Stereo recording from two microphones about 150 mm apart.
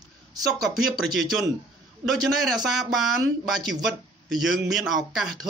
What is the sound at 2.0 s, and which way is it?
Speech, centre (ahead or behind).